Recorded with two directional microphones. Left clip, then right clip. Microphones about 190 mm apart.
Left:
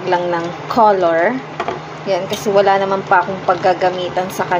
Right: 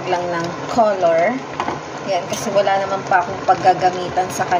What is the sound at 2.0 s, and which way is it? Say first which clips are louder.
Speech: left 3 dB; 20° left (ahead or behind).